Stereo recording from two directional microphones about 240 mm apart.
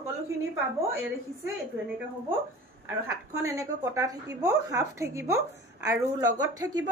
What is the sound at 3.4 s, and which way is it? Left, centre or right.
A woman's voice, centre.